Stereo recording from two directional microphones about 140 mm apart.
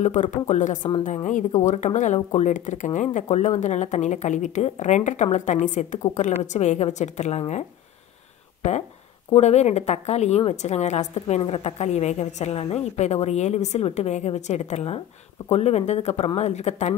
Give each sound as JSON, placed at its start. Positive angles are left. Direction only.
{"t": 0.0, "sound": "speech", "side_deg": 60}
{"t": 9.3, "sound": "a woman's voice", "side_deg": 50}